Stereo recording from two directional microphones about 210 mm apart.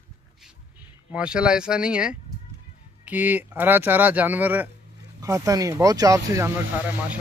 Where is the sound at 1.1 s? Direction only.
5° right (ahead or behind).